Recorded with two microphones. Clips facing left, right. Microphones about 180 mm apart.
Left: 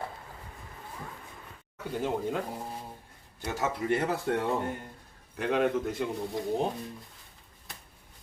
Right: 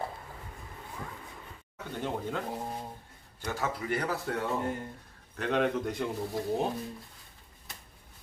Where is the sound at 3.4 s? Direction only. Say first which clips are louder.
Left 2 dB; 20° left (ahead or behind).